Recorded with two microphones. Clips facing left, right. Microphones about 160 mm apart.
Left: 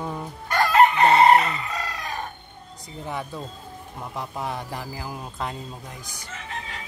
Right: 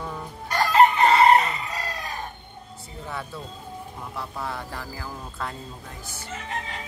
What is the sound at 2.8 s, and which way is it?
Speech, 15° left (ahead or behind).